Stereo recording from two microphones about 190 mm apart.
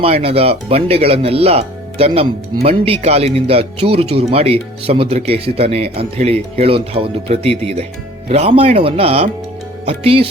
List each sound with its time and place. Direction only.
0.0 s speech: 30° right (ahead or behind)